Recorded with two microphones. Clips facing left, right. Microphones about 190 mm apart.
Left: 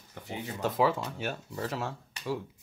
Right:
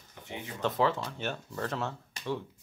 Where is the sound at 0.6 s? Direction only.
10° left (ahead or behind).